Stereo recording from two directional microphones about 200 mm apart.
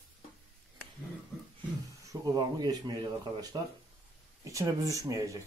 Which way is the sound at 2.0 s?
20° right (ahead or behind).